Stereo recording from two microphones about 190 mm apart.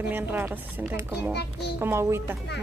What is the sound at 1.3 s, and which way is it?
Speech, 65° left (ahead or behind).